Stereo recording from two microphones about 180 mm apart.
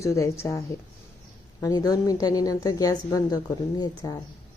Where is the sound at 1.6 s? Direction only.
20° left (ahead or behind).